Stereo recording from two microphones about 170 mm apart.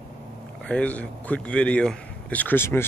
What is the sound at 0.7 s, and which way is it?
A man's voice, 5° left (ahead or behind).